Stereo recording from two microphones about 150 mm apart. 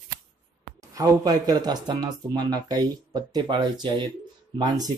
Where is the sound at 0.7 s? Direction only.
25° right (ahead or behind).